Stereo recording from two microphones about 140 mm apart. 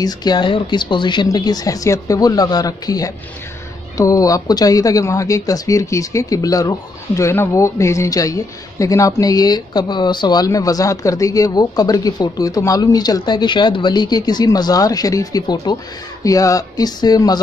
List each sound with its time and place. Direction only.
0.0 s speech: 30° left (ahead or behind)